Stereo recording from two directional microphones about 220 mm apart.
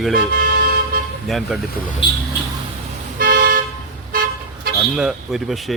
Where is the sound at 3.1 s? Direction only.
40° right (ahead or behind).